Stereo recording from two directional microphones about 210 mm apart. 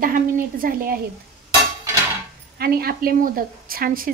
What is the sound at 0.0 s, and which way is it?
Speech, 40° right (ahead or behind).